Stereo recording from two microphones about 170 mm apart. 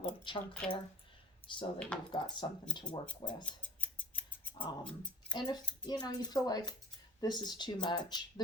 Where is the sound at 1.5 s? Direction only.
30° left (ahead or behind).